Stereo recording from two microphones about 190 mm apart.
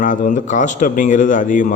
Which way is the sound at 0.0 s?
45° left (ahead or behind).